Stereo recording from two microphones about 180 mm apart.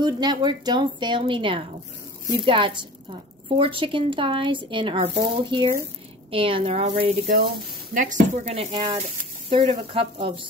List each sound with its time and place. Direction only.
0.0 s a woman's voice: 25° right (ahead or behind)
7.9 s a woman's voice: 45° right (ahead or behind); by 10.4 s 30° right (ahead or behind)